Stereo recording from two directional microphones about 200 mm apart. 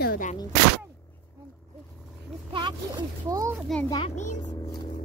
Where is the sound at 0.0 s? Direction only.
50° left (ahead or behind).